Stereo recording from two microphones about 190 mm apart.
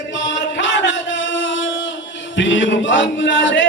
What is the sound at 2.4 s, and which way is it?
Music, 75° left (ahead or behind).